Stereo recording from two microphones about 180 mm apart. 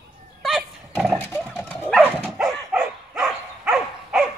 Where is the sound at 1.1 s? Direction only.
15° left (ahead or behind).